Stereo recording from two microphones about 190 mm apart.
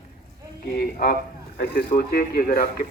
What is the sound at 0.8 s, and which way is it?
A man's voice, 50° left (ahead or behind).